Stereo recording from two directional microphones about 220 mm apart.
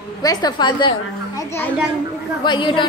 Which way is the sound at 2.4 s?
20° left (ahead or behind).